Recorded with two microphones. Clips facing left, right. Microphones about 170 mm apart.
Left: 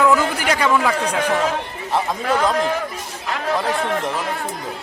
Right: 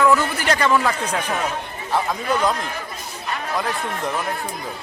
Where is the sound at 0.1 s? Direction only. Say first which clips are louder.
Left 1 dB; 10° left (ahead or behind).